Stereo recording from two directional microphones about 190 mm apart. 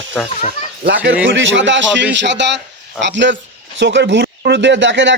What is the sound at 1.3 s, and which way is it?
A man's voice, 75° right (ahead or behind).